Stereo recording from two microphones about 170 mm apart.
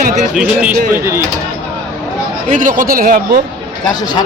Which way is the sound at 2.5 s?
50° right (ahead or behind).